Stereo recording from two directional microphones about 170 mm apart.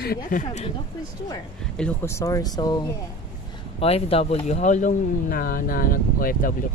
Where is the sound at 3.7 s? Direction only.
35° left (ahead or behind).